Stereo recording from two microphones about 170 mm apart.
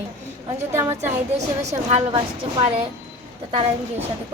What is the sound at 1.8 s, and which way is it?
Speech, 35° right (ahead or behind).